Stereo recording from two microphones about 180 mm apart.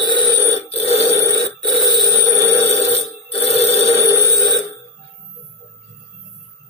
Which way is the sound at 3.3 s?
35° left (ahead or behind).